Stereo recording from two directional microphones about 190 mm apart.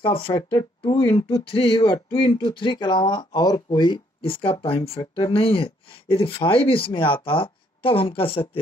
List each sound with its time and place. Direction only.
0.0 s speech: 25° left (ahead or behind)